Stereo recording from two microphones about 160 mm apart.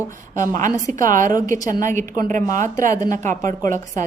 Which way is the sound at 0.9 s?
55° right (ahead or behind).